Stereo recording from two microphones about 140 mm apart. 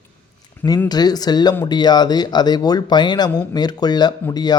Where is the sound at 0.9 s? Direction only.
30° left (ahead or behind).